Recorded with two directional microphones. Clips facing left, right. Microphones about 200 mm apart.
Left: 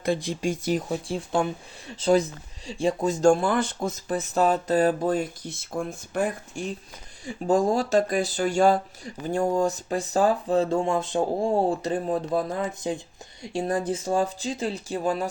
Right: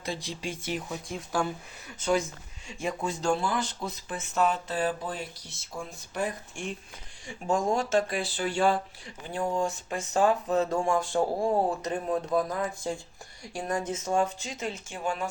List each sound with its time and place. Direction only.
0.0 s speech: 55° left (ahead or behind); by 12.6 s 30° left (ahead or behind)
12.9 s speech: 20° left (ahead or behind); by 15.3 s 35° left (ahead or behind)